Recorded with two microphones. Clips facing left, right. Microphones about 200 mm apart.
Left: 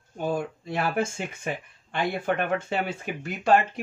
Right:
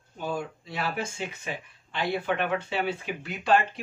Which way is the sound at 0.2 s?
50° left (ahead or behind).